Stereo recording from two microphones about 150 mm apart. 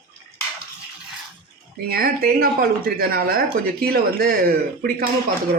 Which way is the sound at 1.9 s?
85° right.